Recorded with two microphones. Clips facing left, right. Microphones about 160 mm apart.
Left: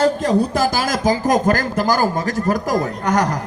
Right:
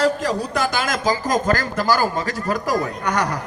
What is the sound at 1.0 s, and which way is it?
A man's voice, 50° left (ahead or behind).